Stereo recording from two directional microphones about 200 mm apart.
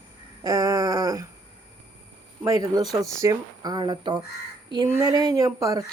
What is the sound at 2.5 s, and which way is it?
Speech, 20° right (ahead or behind).